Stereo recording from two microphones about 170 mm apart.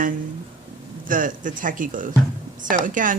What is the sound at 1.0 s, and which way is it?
Speech, 50° right (ahead or behind).